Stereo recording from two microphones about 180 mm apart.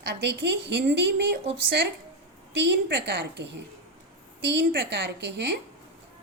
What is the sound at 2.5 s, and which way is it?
A woman's voice, 70° right (ahead or behind).